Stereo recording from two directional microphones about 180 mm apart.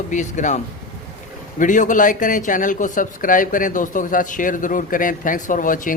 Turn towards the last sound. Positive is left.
turn(degrees=45)  # may be behind; listen again after turning